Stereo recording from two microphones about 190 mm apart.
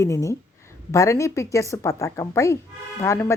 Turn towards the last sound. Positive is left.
turn(degrees=15)  # may be behind; listen again after turning